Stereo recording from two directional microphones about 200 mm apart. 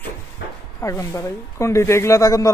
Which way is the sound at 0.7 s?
15° left (ahead or behind).